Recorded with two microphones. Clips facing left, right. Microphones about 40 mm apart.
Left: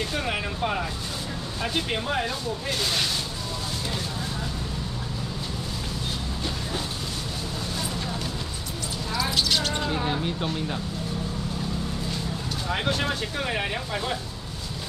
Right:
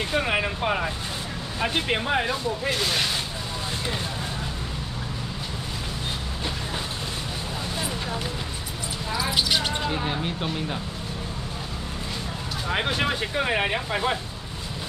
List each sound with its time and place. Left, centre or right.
0.1 s speech: right
9.3 s speech: centre
12.6 s speech: centre